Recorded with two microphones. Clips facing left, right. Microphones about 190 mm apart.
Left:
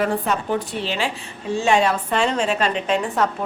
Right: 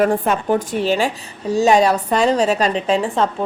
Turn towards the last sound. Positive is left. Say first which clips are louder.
# right 3 dB
turn(degrees=-35)  # may be behind; listen again after turning